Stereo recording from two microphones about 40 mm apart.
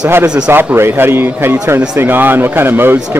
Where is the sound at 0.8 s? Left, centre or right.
Right.